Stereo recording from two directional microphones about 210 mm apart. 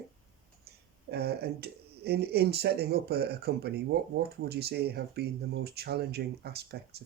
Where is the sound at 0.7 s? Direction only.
50° right (ahead or behind).